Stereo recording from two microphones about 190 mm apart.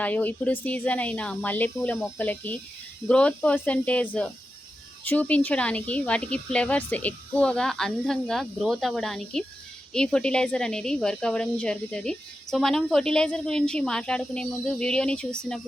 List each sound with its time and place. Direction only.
0.0 s speech: 10° left (ahead or behind)